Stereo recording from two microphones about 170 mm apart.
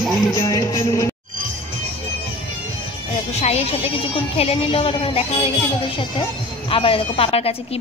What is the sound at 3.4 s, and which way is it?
Speech, 40° left (ahead or behind).